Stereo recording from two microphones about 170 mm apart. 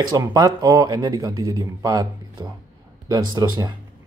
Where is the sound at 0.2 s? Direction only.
20° right (ahead or behind).